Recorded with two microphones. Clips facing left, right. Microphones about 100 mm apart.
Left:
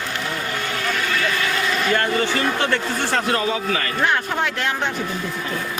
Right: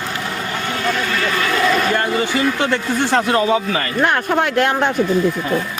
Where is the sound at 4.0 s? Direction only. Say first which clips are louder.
Right 6 dB; 55° right (ahead or behind).